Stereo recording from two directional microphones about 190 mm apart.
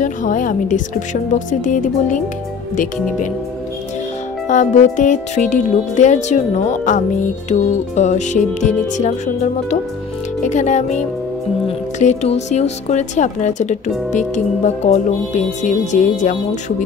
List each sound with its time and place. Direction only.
0.0 s a woman's voice: 40° left (ahead or behind)
4.5 s a woman's voice: 40° left (ahead or behind)